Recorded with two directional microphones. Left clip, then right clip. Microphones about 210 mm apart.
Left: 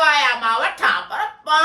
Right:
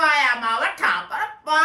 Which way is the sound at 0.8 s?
10° left (ahead or behind).